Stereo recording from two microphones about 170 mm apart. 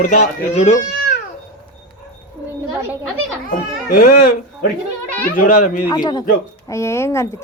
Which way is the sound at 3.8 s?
60° left (ahead or behind).